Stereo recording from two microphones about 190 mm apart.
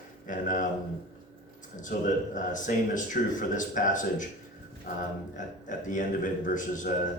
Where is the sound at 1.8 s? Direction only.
40° left (ahead or behind).